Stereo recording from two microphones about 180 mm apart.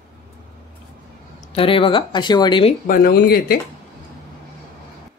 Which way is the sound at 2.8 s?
55° left (ahead or behind).